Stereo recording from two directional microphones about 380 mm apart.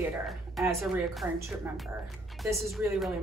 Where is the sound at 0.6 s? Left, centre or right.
Centre.